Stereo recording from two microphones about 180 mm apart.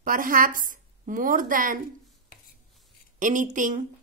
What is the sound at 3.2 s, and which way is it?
Speech, 45° right (ahead or behind).